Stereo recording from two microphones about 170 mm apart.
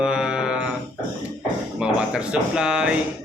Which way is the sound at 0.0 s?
5° right (ahead or behind).